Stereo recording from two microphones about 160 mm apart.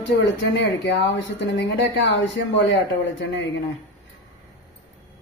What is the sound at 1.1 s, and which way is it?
A woman's voice, 90° left.